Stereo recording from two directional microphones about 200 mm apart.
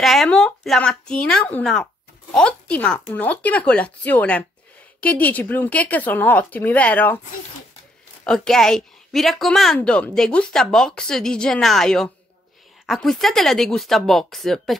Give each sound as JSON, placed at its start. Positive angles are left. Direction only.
{"t": 0.0, "sound": "a woman's voice", "side_deg": 0}
{"t": 8.2, "sound": "a woman's voice", "side_deg": 5}